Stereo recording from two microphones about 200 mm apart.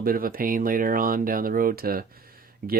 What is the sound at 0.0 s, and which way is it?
Speech, 45° right (ahead or behind).